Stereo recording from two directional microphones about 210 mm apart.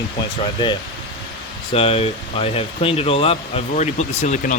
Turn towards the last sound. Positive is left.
turn(degrees=35)  # may be behind; listen again after turning